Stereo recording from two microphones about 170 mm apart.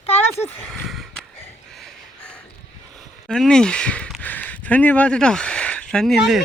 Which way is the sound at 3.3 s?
5° left (ahead or behind).